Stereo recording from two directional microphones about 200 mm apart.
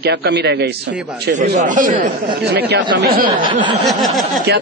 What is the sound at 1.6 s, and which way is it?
Speech, 40° right (ahead or behind).